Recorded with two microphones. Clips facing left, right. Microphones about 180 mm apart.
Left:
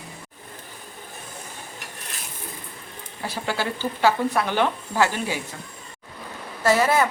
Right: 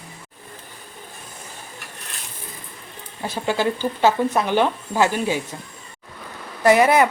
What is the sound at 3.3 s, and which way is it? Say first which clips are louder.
A woman's voice: right 5 dB; 20° right (ahead or behind).